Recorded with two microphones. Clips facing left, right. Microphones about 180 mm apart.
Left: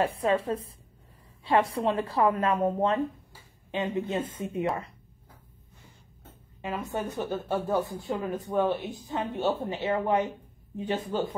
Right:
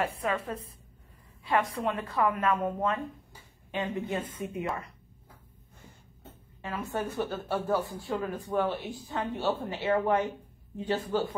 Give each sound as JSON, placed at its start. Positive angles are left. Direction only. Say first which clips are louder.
{"t": 0.0, "sound": "a woman's voice", "louder": "left 5 dB", "side_deg": 30}
{"t": 6.6, "sound": "speech", "louder": "left 1 dB", "side_deg": 20}